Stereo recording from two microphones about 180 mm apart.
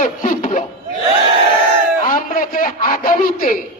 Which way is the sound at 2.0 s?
50° left (ahead or behind).